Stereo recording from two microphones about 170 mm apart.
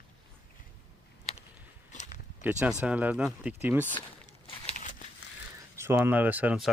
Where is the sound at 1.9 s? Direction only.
45° left (ahead or behind).